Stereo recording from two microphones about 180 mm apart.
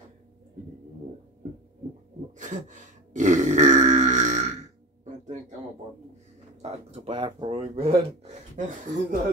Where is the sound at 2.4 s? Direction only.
45° right (ahead or behind).